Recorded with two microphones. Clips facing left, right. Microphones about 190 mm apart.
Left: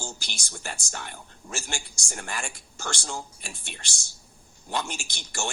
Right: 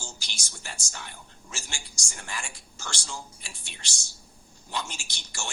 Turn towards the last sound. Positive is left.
turn(degrees=55)  # may be behind; listen again after turning